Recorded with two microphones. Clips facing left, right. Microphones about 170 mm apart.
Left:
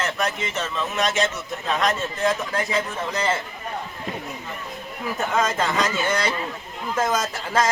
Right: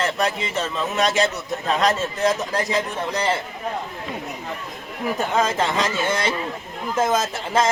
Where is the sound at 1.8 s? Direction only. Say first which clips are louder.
Right 2 dB; 40° right (ahead or behind).